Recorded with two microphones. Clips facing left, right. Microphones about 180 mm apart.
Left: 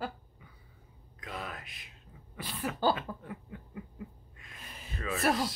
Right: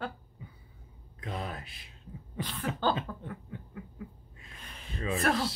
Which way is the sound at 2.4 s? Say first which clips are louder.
Even; 10° left (ahead or behind).